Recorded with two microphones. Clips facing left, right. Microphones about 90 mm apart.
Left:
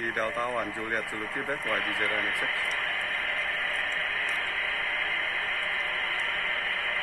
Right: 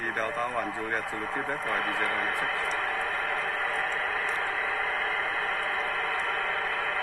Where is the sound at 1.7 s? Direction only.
25° right (ahead or behind).